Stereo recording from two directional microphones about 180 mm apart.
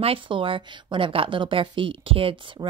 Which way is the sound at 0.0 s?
30° right (ahead or behind).